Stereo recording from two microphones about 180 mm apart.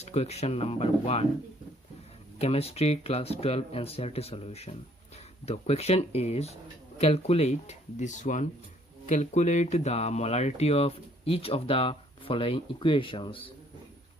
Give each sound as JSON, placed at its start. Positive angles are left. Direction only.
{"t": 0.0, "sound": "speech", "side_deg": 35}
{"t": 2.4, "sound": "speech", "side_deg": 35}